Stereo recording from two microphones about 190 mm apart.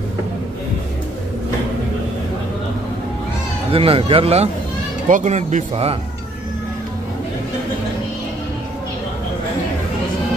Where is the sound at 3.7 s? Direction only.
30° right (ahead or behind).